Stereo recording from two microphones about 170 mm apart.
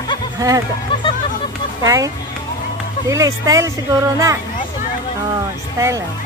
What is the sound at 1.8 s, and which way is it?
Speech, 20° right (ahead or behind).